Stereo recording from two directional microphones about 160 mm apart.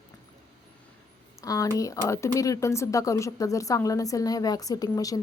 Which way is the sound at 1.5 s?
20° left (ahead or behind).